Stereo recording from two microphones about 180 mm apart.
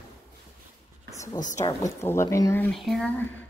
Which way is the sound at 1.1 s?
15° left (ahead or behind).